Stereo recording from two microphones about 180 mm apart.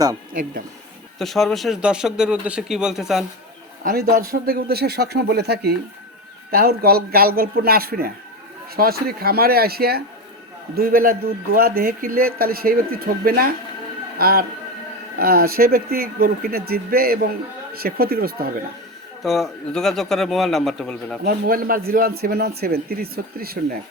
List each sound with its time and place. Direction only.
1.2 s speech: centre (ahead or behind)
3.8 s speech: 60° right (ahead or behind)
19.2 s speech: centre (ahead or behind)
21.2 s speech: 55° right (ahead or behind)